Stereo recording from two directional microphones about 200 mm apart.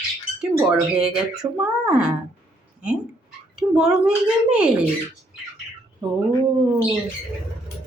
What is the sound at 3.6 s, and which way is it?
Speech, centre (ahead or behind).